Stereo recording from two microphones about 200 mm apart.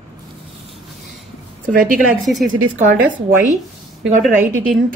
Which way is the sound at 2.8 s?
40° right (ahead or behind).